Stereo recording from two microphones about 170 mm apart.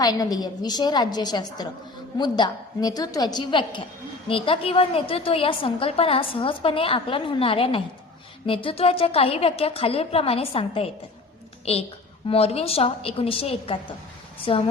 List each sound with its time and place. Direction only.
0.0 s a woman's voice: 20° left (ahead or behind)